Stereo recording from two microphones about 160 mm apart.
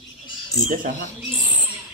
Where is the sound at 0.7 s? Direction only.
60° right (ahead or behind).